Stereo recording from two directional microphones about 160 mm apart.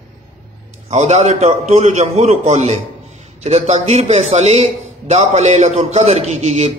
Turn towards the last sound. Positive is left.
turn(degrees=-40)  # may be behind; listen again after turning